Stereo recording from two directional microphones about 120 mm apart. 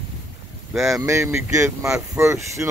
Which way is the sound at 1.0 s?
25° right (ahead or behind).